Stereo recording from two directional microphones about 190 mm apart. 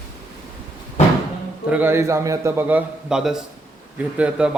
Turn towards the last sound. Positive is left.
turn(degrees=-5)  # may be behind; listen again after turning